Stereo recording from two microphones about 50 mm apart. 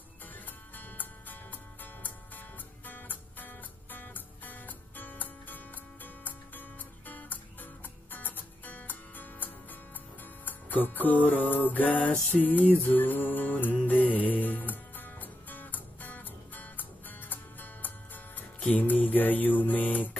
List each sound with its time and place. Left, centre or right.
0.7 s music: left